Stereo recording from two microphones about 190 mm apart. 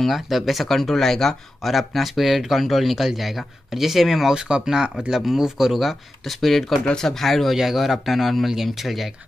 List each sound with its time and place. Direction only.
0.0 s speech: centre (ahead or behind)